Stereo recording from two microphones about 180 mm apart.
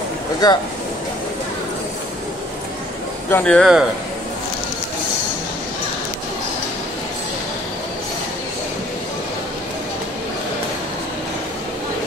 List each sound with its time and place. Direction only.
0.4 s speech: 20° left (ahead or behind)
3.3 s a man's voice: 10° left (ahead or behind)